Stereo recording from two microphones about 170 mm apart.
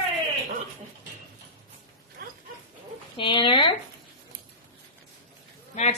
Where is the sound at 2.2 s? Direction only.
60° right (ahead or behind).